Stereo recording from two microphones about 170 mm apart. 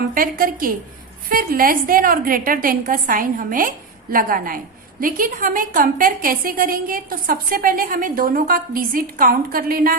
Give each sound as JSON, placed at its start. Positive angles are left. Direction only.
{"t": 0.1, "sound": "a woman's voice", "side_deg": -55}